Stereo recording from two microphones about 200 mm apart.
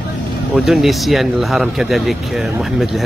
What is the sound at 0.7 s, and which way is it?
Speech, centre (ahead or behind).